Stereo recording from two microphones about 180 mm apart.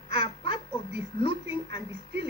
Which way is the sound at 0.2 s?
25° left (ahead or behind).